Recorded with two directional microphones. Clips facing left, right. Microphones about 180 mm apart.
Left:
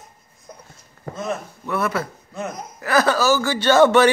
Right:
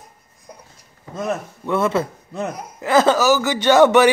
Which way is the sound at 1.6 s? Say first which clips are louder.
Right 4 dB; 25° right (ahead or behind).